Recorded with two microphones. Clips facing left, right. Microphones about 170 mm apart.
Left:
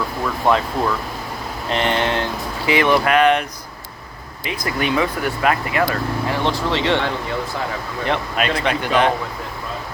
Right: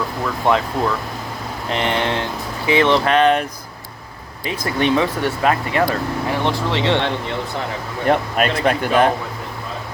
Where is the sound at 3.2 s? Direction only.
35° right (ahead or behind).